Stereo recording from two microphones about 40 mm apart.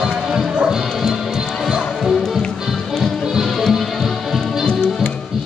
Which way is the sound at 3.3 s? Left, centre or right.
Centre.